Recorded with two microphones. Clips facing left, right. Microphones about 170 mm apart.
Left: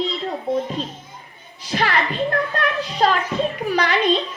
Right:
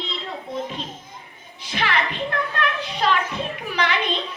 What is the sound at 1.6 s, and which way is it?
Children playing, 40° left (ahead or behind).